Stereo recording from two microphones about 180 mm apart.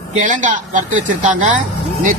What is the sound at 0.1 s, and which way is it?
A man's voice, 45° right (ahead or behind).